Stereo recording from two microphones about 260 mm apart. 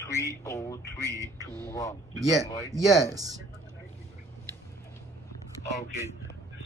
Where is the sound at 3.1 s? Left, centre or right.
Centre.